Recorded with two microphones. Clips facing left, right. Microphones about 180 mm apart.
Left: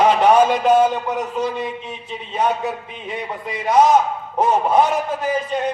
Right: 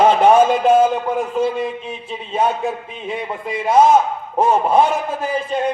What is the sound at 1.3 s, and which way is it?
Speech, 5° right (ahead or behind).